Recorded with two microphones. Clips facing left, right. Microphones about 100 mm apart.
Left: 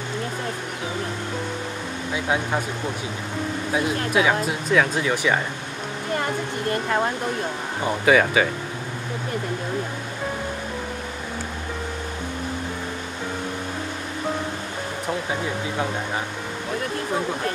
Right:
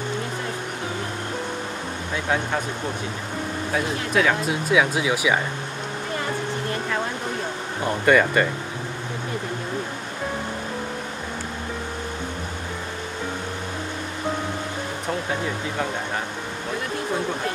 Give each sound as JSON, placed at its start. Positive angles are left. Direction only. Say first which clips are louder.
{"t": 2.1, "sound": "speech", "louder": "even", "side_deg": 5}
{"t": 3.7, "sound": "speech", "louder": "left 1 dB", "side_deg": 5}
{"t": 4.5, "sound": "speech", "louder": "even", "side_deg": -5}
{"t": 7.8, "sound": "speech", "louder": "even", "side_deg": 5}